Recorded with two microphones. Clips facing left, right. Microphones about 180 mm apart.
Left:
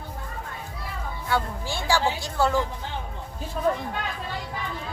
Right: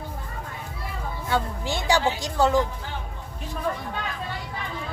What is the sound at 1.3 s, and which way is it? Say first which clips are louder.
Speech: right 1 dB; 20° right (ahead or behind).